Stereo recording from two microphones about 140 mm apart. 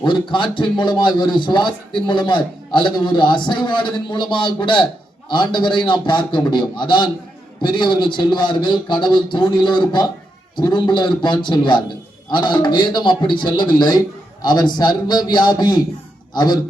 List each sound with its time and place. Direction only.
0.0 s a man's voice: 35° left (ahead or behind)